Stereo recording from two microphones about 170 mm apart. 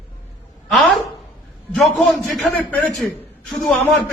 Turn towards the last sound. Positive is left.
turn(degrees=10)  # may be behind; listen again after turning